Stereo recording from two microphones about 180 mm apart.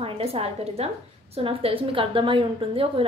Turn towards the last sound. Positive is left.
turn(degrees=-30)  # may be behind; listen again after turning